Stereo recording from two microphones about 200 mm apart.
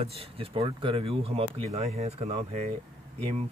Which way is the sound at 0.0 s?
30° right (ahead or behind).